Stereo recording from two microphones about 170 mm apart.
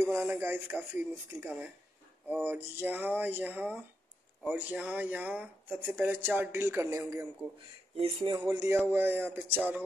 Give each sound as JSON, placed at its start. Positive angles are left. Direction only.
{"t": 0.0, "sound": "speech", "side_deg": -15}
{"t": 7.9, "sound": "speech", "side_deg": -35}
{"t": 8.5, "sound": "speech", "side_deg": -20}